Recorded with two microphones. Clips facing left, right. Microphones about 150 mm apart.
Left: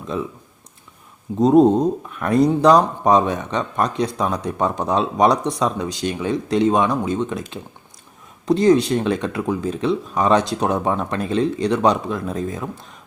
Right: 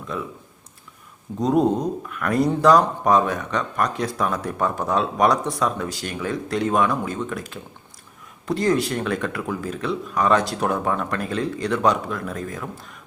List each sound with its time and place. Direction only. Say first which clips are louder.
0.1 s speech: left 5 dB; 25° left (ahead or behind)
1.4 s speech: left 6 dB; 25° left (ahead or behind)